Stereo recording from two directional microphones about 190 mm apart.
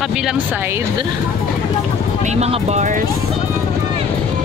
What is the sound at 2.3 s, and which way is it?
Speech, 35° right (ahead or behind).